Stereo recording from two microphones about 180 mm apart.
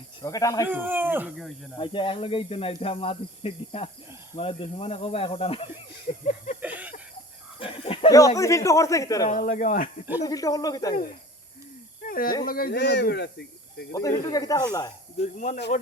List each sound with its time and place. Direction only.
0.2 s speech: 20° left (ahead or behind)
0.7 s speech: 10° right (ahead or behind)
1.8 s speech: 30° left (ahead or behind)
6.2 s a sound: 45° left (ahead or behind)
6.6 s a sound: 10° right (ahead or behind)
7.6 s a sound: 30° left (ahead or behind)
8.4 s speech: 15° left (ahead or behind)
9.3 s speech: 50° left (ahead or behind)
10.2 s speech: 20° left (ahead or behind)
12.0 s snake: 50° left (ahead or behind)
12.5 s speech: 55° left (ahead or behind); by 13.8 s 70° left (ahead or behind)
13.9 s speech: 20° left (ahead or behind)
15.2 s speech: 40° left (ahead or behind)